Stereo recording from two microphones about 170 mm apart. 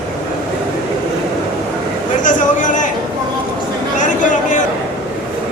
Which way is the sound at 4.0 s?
45° left (ahead or behind).